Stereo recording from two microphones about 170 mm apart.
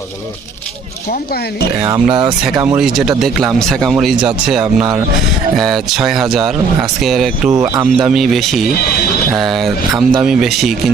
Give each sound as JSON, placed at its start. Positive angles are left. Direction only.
{"t": 1.1, "sound": "speech", "side_deg": 60}
{"t": 1.8, "sound": "speech", "side_deg": -25}
{"t": 2.6, "sound": "speech", "side_deg": -10}
{"t": 5.5, "sound": "speech", "side_deg": 0}